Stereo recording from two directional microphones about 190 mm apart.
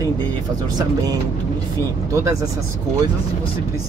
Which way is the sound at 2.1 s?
15° right (ahead or behind).